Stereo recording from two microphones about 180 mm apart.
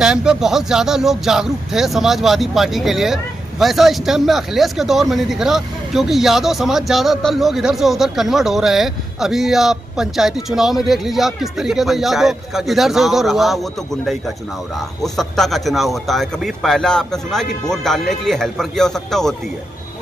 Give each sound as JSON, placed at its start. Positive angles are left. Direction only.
{"t": 0.0, "sound": "speech", "side_deg": -5}
{"t": 15.0, "sound": "speech", "side_deg": 0}